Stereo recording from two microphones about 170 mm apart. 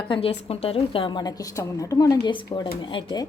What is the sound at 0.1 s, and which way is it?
A woman's voice, 35° left (ahead or behind).